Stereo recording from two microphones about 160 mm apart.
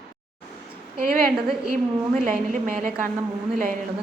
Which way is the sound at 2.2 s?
55° right (ahead or behind).